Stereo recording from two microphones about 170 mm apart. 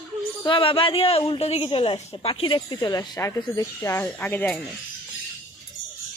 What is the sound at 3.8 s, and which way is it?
Speech, 15° left (ahead or behind).